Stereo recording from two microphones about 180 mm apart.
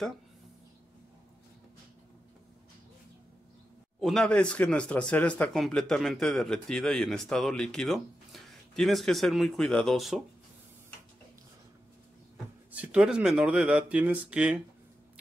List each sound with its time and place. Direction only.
4.0 s speech: 5° left (ahead or behind)
12.7 s speech: 5° right (ahead or behind)